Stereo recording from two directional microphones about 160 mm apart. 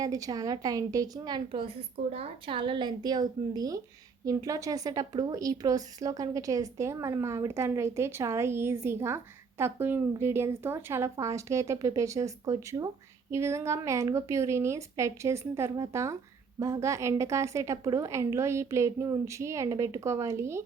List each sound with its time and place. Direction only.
0.0 s a woman's voice: 20° right (ahead or behind)